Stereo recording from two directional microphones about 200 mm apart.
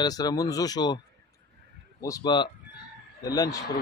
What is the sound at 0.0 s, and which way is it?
Speech, 20° left (ahead or behind).